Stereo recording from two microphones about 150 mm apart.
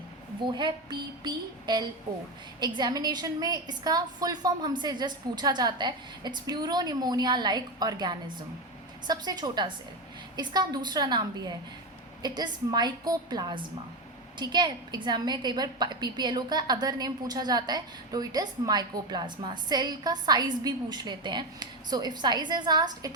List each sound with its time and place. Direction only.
0.4 s a woman's voice: 30° right (ahead or behind)